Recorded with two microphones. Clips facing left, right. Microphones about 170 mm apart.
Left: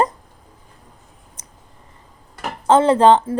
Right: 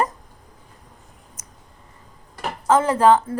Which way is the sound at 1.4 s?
30° left (ahead or behind).